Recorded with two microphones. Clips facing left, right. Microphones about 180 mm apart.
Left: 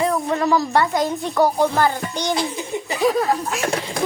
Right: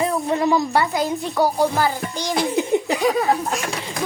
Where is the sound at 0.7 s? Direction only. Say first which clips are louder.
Left 1 dB; 5° right (ahead or behind).